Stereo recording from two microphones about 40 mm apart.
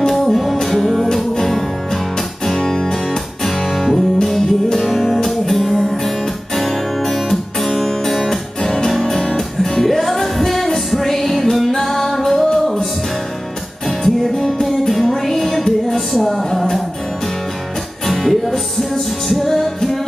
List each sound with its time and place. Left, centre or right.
0.1 s music: centre
8.6 s music: centre
8.9 s music: centre
13.8 s music: centre
18.0 s music: centre